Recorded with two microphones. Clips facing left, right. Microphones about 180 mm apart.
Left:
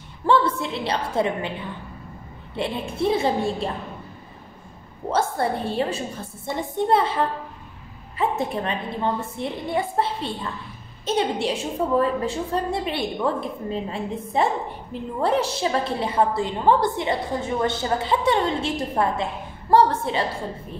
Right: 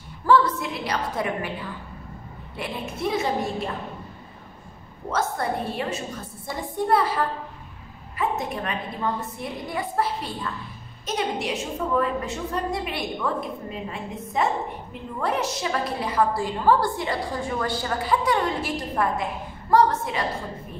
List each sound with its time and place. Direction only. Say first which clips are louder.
0.3 s a woman's voice: even; 30° left (ahead or behind)
2.5 s a woman's voice: left 5 dB; 30° left (ahead or behind)
5.1 s a woman's voice: left 3 dB; 30° left (ahead or behind)